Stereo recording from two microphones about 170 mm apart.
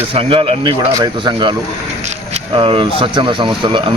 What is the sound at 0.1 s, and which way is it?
Speech, 30° right (ahead or behind).